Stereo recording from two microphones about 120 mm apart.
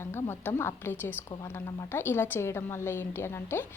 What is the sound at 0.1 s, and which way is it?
A woman's voice, 20° left (ahead or behind).